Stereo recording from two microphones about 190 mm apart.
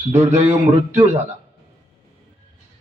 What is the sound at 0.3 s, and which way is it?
Speech, 40° right (ahead or behind).